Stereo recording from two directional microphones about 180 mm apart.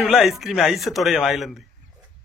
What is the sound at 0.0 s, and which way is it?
Speech, centre (ahead or behind).